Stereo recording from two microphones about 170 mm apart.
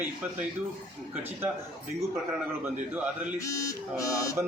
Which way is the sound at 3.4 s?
20° left (ahead or behind).